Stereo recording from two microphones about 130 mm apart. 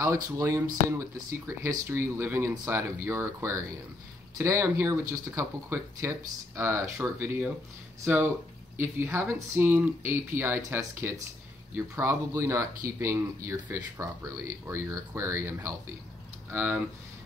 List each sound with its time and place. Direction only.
0.0 s speech: 25° right (ahead or behind)